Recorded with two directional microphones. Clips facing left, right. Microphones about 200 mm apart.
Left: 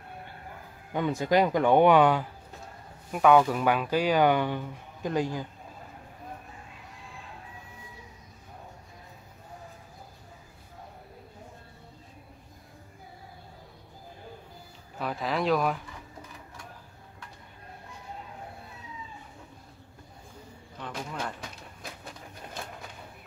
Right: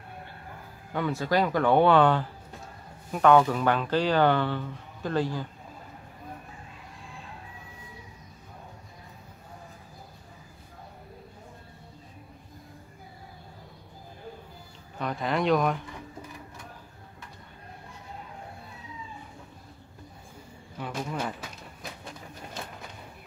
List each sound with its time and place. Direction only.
0.9 s speech: 20° left (ahead or behind)
15.0 s speech: 5° left (ahead or behind)
20.7 s speech: 10° right (ahead or behind)